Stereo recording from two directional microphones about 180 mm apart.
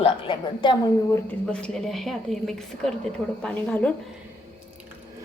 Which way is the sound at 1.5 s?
5° left (ahead or behind).